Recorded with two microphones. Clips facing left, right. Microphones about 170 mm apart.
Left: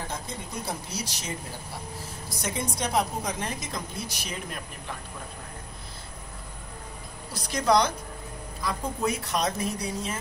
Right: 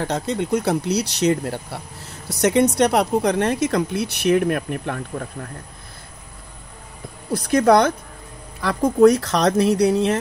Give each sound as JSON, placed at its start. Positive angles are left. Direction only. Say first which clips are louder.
{"t": 0.0, "sound": "speech", "louder": "right 13 dB", "side_deg": -75}
{"t": 7.2, "sound": "speech", "louder": "right 9 dB", "side_deg": -55}
{"t": 8.5, "sound": "speech", "louder": "right 15 dB", "side_deg": -80}